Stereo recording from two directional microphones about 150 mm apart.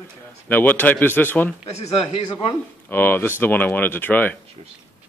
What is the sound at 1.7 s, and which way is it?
Speech, 45° left (ahead or behind).